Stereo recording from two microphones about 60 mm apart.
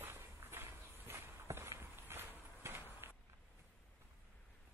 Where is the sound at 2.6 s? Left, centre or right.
Right.